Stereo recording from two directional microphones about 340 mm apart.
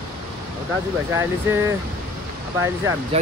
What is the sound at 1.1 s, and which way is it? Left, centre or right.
Speech, centre.